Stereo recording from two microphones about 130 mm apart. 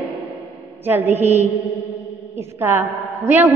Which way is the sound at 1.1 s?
15° right (ahead or behind).